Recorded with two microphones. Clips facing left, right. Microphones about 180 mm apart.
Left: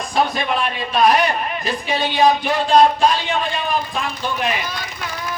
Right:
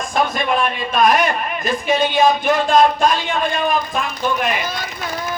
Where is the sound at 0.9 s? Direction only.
45° right (ahead or behind).